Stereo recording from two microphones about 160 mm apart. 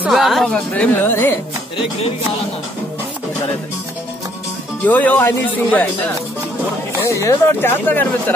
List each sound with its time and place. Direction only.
0.0 s a woman's voice: centre (ahead or behind)
4.8 s speech: 10° left (ahead or behind)
7.0 s speech: 20° left (ahead or behind)